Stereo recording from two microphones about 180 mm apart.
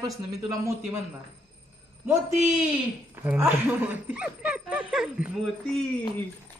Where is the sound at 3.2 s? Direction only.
10° right (ahead or behind).